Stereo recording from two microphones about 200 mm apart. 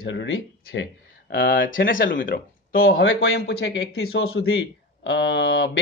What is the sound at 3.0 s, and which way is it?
Speech, 70° left (ahead or behind).